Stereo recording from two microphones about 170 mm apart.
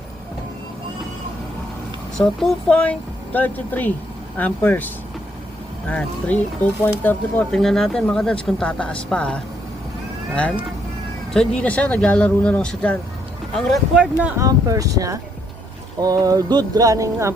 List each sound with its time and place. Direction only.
2.1 s speech: 5° left (ahead or behind)
5.9 s speech: 5° left (ahead or behind)
11.3 s speech: 5° left (ahead or behind)
14.3 s a sound: 20° right (ahead or behind)